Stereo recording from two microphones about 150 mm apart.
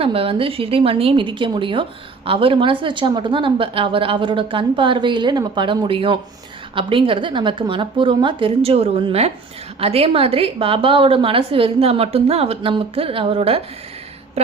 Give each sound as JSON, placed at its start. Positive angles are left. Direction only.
{"t": 0.0, "sound": "a woman's voice", "side_deg": -40}